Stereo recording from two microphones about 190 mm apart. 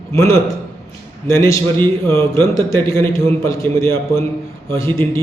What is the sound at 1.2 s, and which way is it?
A man's voice, 15° left (ahead or behind).